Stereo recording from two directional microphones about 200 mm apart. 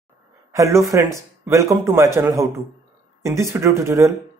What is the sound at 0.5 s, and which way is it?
Speech, 15° right (ahead or behind).